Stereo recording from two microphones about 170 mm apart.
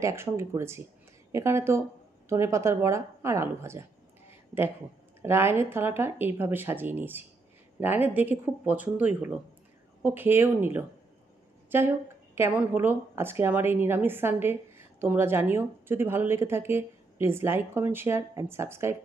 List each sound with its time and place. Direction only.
0.0 s speech: 15° right (ahead or behind)
5.2 s speech: 15° right (ahead or behind)